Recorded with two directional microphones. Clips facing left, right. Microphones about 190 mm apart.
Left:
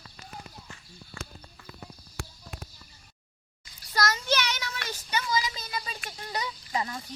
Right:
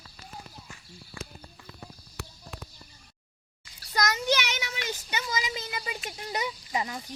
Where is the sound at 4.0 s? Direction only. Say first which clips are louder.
Right 1 dB; 15° right (ahead or behind).